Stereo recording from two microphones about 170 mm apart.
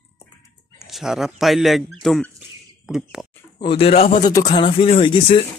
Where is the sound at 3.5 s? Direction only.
35° left (ahead or behind).